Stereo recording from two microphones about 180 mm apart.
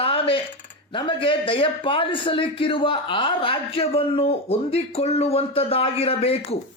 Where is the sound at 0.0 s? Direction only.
30° left (ahead or behind).